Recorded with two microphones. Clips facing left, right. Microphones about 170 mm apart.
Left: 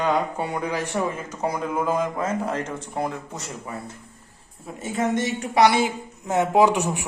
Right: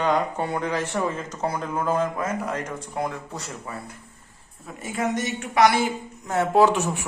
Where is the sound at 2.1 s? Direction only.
30° left (ahead or behind).